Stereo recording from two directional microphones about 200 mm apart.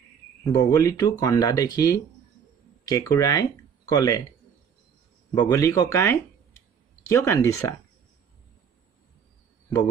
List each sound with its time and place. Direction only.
0.4 s speech: 15° left (ahead or behind)
5.3 s speech: 15° left (ahead or behind)